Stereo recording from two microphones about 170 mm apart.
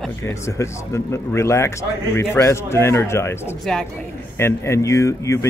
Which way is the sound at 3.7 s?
Centre (ahead or behind).